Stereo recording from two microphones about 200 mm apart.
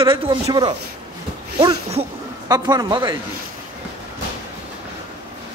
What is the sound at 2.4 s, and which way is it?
Speech, 20° right (ahead or behind).